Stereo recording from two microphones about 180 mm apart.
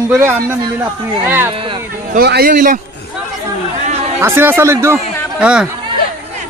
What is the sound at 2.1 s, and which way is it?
Speech, 60° right (ahead or behind).